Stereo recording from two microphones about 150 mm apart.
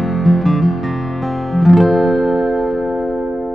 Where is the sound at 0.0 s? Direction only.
Centre (ahead or behind).